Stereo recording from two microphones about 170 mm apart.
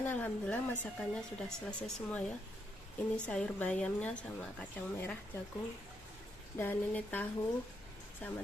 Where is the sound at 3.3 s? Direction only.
5° left (ahead or behind).